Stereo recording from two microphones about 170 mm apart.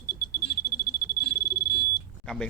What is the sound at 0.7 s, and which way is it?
Smoke detector, 65° left (ahead or behind).